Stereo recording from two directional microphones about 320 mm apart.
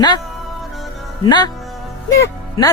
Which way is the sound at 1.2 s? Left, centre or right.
Centre.